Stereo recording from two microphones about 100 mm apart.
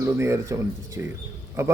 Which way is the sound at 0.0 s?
30° right (ahead or behind).